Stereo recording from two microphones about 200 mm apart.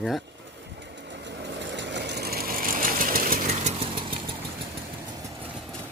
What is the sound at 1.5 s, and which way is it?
Sewing machine, 60° right (ahead or behind).